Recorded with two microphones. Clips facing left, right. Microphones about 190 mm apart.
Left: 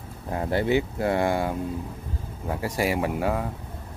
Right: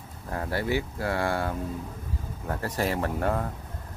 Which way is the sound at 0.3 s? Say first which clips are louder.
Left 5 dB; 20° left (ahead or behind).